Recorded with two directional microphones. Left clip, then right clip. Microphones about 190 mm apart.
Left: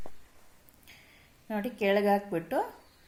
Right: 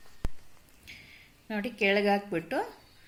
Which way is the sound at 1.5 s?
Centre (ahead or behind).